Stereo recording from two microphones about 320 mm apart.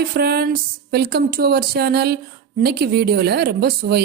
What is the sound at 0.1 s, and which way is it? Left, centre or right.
A woman's voice, right.